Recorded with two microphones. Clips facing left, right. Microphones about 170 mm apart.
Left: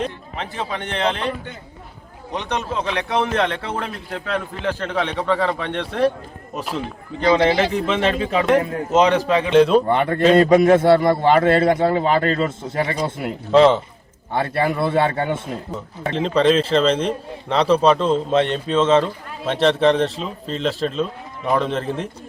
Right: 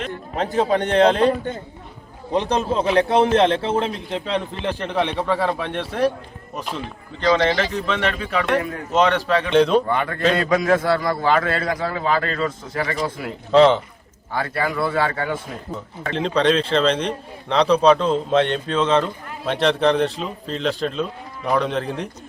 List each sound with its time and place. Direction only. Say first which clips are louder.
0.3 s a man's voice: right 10 dB; 40° right (ahead or behind); by 6.8 s 5° left (ahead or behind)
7.4 s a man's voice: left 3 dB; 15° left (ahead or behind)
9.5 s a man's voice: left 3 dB; 5° left (ahead or behind)
9.8 s a man's voice: left 4 dB; 30° left (ahead or behind)
13.5 s a man's voice: left 1 dB; centre (ahead or behind)
14.3 s a man's voice: left 3 dB; 25° left (ahead or behind)
16.1 s a man's voice: left 2 dB; centre (ahead or behind)